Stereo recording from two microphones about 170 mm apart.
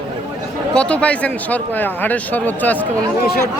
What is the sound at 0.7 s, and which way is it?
Speech, 5° left (ahead or behind).